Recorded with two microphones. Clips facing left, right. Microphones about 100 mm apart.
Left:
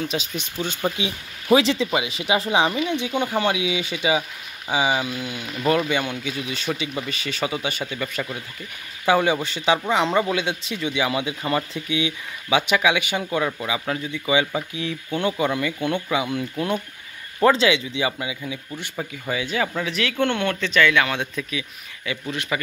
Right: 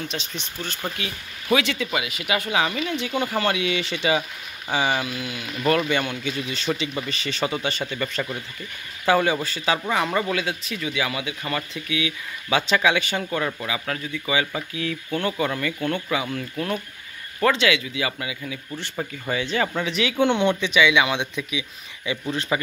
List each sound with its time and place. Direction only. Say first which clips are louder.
0.0 s speech: left 5 dB; 5° left (ahead or behind)
1.5 s speech: left 4 dB; 30° left (ahead or behind); by 5.0 s 10° left (ahead or behind)
5.0 s speech: left 1 dB; 25° left (ahead or behind)
5.5 s speech: even; centre (ahead or behind)
9.0 s speech: left 1 dB; 15° left (ahead or behind)
12.4 s speech: left 1 dB; 15° left (ahead or behind)
18.9 s speech: even; 5° left (ahead or behind)
20.2 s speech: right 3 dB; 15° right (ahead or behind)
22.3 s speech: right 2 dB; 30° right (ahead or behind)